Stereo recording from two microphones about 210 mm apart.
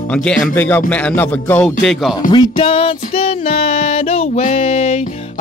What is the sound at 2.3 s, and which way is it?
Music, 20° left (ahead or behind).